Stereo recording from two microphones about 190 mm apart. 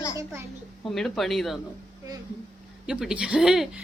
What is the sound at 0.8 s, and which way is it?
Speech, centre (ahead or behind).